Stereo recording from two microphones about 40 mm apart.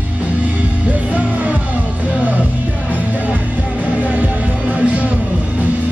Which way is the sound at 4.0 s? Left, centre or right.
Right.